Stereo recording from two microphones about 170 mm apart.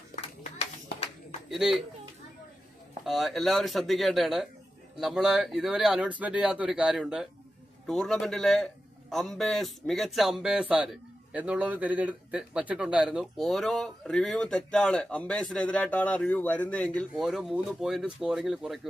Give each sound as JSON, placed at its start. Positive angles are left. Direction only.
{"t": 1.5, "sound": "speech", "side_deg": 0}
{"t": 3.0, "sound": "speech", "side_deg": 0}